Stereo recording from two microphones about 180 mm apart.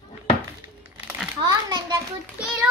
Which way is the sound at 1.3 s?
25° right (ahead or behind).